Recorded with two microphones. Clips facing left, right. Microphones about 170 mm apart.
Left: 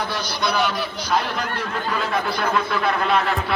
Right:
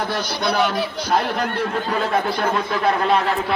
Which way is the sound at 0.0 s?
50° right (ahead or behind).